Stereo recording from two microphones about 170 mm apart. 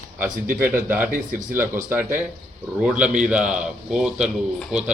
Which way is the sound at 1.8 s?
10° right (ahead or behind).